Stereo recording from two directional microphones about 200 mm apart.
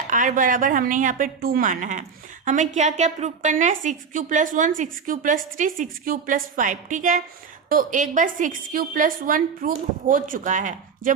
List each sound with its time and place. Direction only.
0.1 s a woman's voice: 40° right (ahead or behind)